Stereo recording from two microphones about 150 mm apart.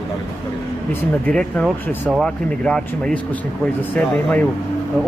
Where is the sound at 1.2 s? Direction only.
5° left (ahead or behind).